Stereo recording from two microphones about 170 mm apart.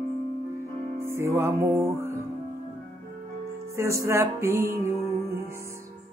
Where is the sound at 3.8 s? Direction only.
15° right (ahead or behind).